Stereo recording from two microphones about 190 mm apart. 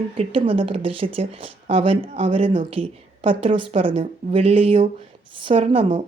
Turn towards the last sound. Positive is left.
turn(degrees=-25)  # may be behind; listen again after turning